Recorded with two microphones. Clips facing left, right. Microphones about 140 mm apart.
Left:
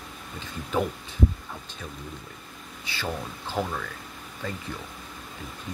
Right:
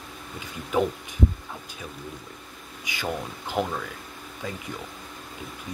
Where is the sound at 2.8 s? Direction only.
15° right (ahead or behind).